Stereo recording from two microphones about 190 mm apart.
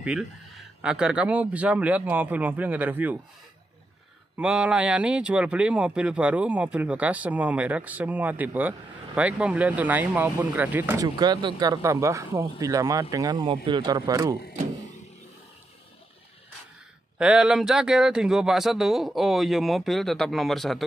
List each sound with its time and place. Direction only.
0.0 s speech: 5° right (ahead or behind)
4.4 s speech: 5° right (ahead or behind)
11.1 s speech: 20° right (ahead or behind)
17.2 s a man's voice: 5° right (ahead or behind)